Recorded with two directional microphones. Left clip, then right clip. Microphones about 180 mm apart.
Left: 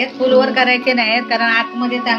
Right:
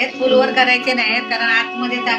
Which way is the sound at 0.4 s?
50° left (ahead or behind).